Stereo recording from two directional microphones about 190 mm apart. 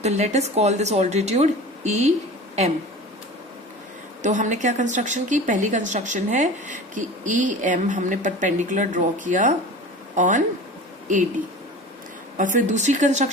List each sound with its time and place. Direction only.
0.0 s a woman's voice: 35° right (ahead or behind)
4.2 s a woman's voice: 40° right (ahead or behind)
12.4 s a woman's voice: 40° right (ahead or behind)